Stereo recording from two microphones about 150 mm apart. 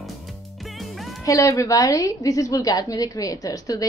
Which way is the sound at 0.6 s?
Centre (ahead or behind).